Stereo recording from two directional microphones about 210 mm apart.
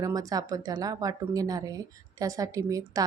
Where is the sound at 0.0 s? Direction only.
15° right (ahead or behind).